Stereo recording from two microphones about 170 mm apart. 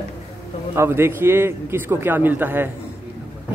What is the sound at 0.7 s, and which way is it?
A man's voice, 15° right (ahead or behind).